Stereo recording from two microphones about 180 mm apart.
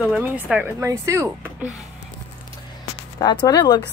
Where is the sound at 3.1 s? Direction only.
20° left (ahead or behind).